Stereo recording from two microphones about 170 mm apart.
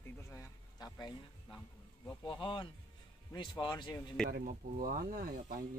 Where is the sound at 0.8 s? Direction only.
25° left (ahead or behind).